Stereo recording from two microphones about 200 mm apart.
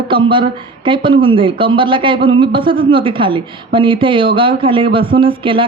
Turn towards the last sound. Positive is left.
turn(degrees=-25)  # may be behind; listen again after turning